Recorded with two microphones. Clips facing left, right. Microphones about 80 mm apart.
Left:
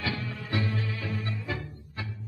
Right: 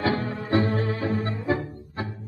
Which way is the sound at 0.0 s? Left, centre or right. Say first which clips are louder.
Right 8 dB; right.